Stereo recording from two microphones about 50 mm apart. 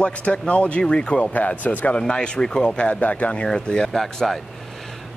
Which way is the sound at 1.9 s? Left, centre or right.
Centre.